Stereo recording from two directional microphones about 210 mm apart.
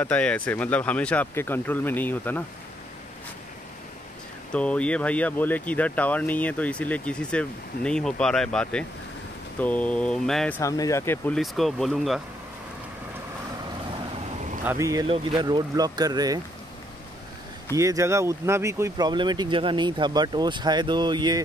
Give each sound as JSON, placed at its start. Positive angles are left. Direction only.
{"t": 0.0, "sound": "speech", "side_deg": 5}
{"t": 4.5, "sound": "speech", "side_deg": 5}
{"t": 10.6, "sound": "speech", "side_deg": 15}
{"t": 14.6, "sound": "speech", "side_deg": -10}
{"t": 17.7, "sound": "speech", "side_deg": -15}